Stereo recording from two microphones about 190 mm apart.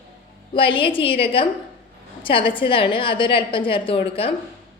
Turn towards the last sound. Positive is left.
turn(degrees=30)  # may be behind; listen again after turning